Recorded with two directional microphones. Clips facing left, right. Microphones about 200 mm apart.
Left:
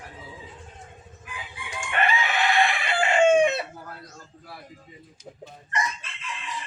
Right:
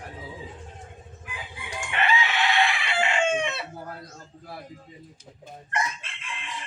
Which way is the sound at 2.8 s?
45° left (ahead or behind).